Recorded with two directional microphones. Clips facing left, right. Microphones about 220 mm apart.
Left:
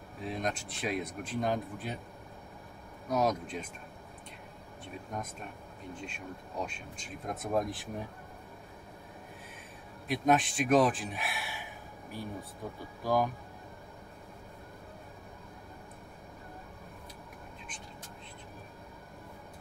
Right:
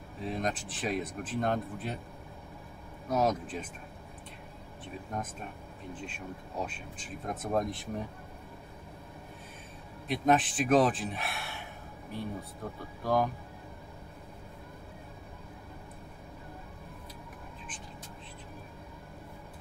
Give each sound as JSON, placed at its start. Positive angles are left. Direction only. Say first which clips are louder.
{"t": 0.2, "sound": "speech", "louder": "right 2 dB", "side_deg": 0}
{"t": 3.1, "sound": "speech", "louder": "right 1 dB", "side_deg": 0}
{"t": 6.6, "sound": "speech", "louder": "right 1 dB", "side_deg": -5}
{"t": 10.0, "sound": "speech", "louder": "right 1 dB", "side_deg": 0}